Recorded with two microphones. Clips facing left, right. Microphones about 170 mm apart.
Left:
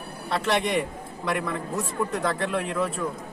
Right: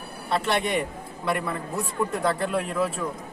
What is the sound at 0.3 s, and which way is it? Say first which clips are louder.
A man's voice: even; centre (ahead or behind).